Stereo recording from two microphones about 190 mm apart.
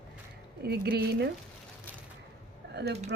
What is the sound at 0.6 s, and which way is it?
Speech, 55° right (ahead or behind).